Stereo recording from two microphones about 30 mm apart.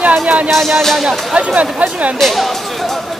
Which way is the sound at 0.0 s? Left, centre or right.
Right.